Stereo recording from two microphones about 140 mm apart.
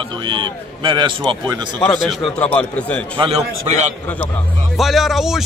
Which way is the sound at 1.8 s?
5° left (ahead or behind).